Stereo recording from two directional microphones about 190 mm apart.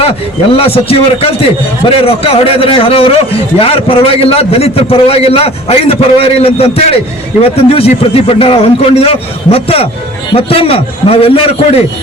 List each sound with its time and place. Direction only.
0.5 s a man's voice: 30° left (ahead or behind)